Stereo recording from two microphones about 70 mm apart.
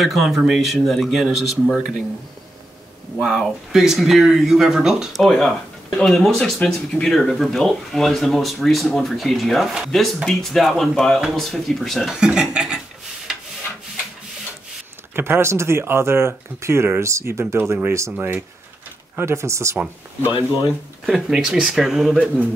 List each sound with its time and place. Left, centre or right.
0.0 s speech: centre
1.2 s speech: centre
3.2 s speech: centre
12.2 s speech: centre
15.1 s speech: right
19.1 s speech: right
21.0 s speech: centre